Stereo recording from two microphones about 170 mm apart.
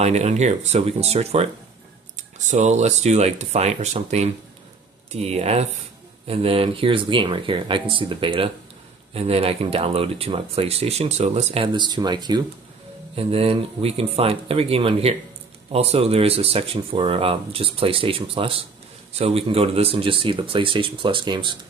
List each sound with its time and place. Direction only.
0.0 s speech: 40° right (ahead or behind)